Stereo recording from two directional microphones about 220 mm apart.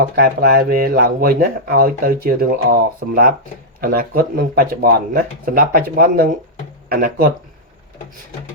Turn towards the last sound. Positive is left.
turn(degrees=-40)  # may be behind; listen again after turning